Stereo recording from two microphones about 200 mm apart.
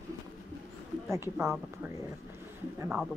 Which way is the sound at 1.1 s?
15° right (ahead or behind).